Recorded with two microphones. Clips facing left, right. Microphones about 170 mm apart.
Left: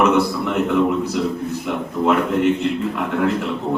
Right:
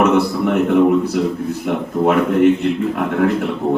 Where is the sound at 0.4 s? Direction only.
55° right (ahead or behind).